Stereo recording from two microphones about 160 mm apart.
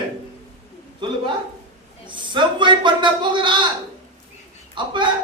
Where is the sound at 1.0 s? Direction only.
30° right (ahead or behind).